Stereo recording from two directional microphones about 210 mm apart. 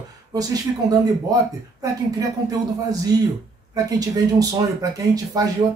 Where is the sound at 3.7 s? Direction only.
15° right (ahead or behind).